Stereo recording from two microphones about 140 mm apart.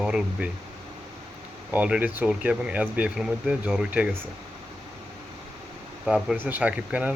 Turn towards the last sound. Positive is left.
turn(degrees=-10)  # may be behind; listen again after turning